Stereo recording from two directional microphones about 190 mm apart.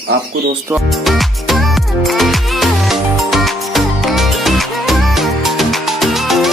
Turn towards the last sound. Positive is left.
turn(degrees=0)  # may be behind; listen again after turning